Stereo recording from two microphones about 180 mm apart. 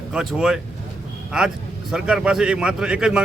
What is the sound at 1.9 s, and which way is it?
Speech, 5° right (ahead or behind).